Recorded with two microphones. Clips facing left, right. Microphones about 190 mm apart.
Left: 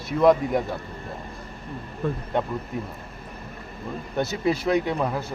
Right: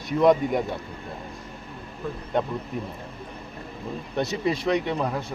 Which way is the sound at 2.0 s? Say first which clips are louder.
Left 5 dB; 60° left (ahead or behind).